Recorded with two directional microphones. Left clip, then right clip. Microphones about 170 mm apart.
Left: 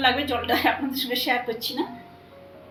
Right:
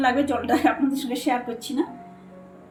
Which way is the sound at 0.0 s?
80° right.